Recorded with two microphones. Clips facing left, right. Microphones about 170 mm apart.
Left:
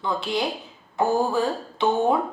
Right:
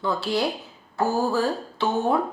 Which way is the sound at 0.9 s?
15° left (ahead or behind).